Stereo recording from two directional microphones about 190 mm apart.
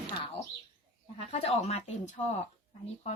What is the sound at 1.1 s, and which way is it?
Speech, 35° left (ahead or behind).